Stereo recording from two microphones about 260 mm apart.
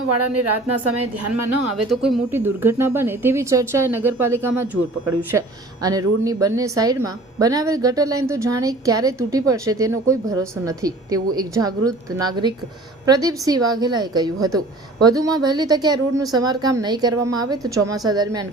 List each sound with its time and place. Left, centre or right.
0.7 s a woman's voice: right
1.7 s a woman's voice: centre